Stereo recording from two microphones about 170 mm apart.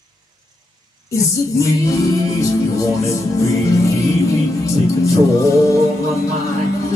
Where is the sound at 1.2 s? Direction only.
20° left (ahead or behind).